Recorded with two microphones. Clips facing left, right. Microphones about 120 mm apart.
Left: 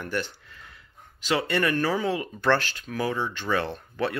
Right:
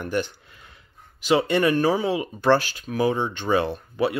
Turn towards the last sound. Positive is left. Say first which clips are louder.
# right 5 dB
turn(degrees=-15)  # may be behind; listen again after turning